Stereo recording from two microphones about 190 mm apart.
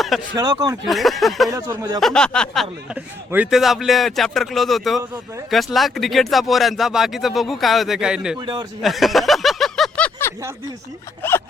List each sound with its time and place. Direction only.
0.3 s speech: 20° right (ahead or behind)
0.9 s speech: centre (ahead or behind)
1.5 s speech: 20° right (ahead or behind)
2.0 s speech: 5° left (ahead or behind)
8.4 s speech: 20° right (ahead or behind)
8.8 s snicker: centre (ahead or behind)
11.2 s speech: 10° left (ahead or behind)